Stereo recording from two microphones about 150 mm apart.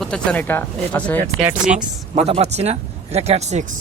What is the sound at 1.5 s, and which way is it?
Speech, 5° right (ahead or behind).